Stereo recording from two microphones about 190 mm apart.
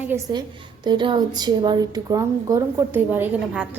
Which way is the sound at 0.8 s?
25° right (ahead or behind).